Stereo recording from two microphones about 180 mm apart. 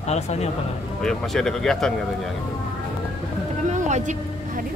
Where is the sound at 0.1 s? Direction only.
35° left (ahead or behind).